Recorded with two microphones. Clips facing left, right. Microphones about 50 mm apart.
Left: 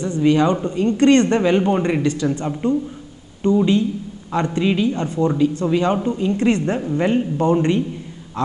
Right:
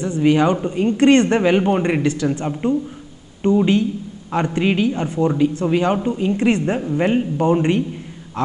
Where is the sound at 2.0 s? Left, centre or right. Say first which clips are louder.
Even; right.